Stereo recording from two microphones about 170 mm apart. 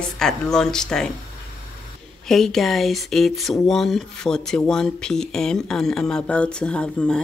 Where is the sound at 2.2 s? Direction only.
Centre (ahead or behind).